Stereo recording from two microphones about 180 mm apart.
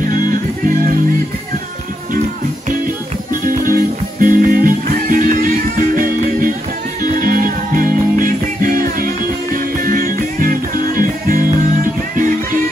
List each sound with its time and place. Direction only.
3.4 s music: 50° right (ahead or behind)